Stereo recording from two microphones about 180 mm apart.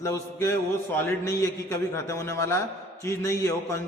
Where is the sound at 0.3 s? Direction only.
15° left (ahead or behind).